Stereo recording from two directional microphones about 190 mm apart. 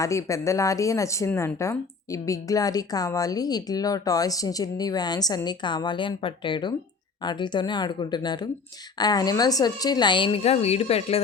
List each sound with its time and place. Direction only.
0.0 s a woman's voice: 15° left (ahead or behind); by 11.2 s 30° left (ahead or behind)